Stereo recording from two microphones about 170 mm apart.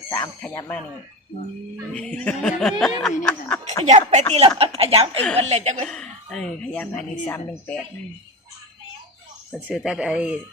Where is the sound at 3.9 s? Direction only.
45° right (ahead or behind).